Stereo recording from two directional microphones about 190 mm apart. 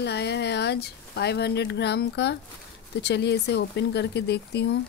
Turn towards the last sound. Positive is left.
turn(degrees=60)  # may be behind; listen again after turning